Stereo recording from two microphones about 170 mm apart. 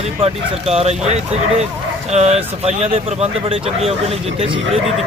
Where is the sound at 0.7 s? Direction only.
40° right (ahead or behind).